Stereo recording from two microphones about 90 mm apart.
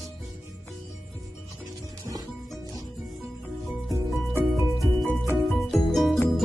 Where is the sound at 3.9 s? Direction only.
Centre (ahead or behind).